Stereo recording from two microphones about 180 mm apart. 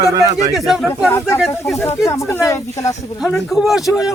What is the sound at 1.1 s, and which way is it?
Speech, 15° left (ahead or behind).